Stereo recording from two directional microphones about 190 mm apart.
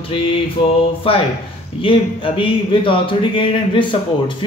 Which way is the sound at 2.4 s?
25° left (ahead or behind).